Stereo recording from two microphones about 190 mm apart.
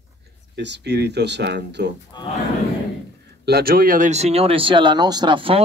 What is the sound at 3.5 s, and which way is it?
Speech, 55° right (ahead or behind).